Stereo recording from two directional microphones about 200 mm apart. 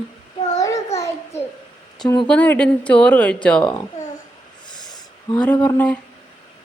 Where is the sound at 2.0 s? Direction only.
20° left (ahead or behind).